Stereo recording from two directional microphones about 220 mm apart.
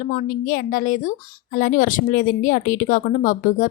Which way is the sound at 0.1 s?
35° left (ahead or behind).